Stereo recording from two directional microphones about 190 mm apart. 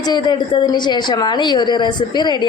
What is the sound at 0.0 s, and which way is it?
A woman's voice, 20° left (ahead or behind).